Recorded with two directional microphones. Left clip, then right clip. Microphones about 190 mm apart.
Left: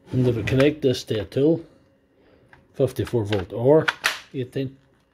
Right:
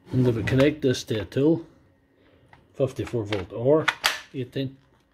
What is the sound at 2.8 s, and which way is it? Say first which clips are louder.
Speech: left 3 dB; 40° left (ahead or behind).